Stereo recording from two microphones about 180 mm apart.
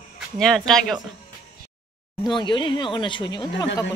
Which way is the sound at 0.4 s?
5° left (ahead or behind).